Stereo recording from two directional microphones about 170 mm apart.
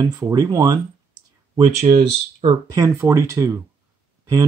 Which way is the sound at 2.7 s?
15° right (ahead or behind).